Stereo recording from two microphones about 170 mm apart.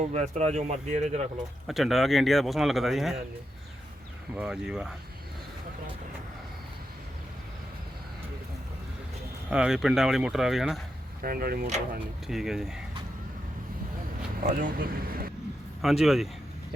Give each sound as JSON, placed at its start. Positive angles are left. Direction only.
{"t": 0.1, "sound": "speech", "side_deg": -40}
{"t": 1.6, "sound": "speech", "side_deg": 0}
{"t": 4.4, "sound": "speech", "side_deg": -5}
{"t": 9.5, "sound": "speech", "side_deg": -5}
{"t": 11.2, "sound": "speech", "side_deg": -60}
{"t": 12.3, "sound": "speech", "side_deg": 0}
{"t": 14.6, "sound": "speech", "side_deg": -60}
{"t": 15.8, "sound": "speech", "side_deg": 0}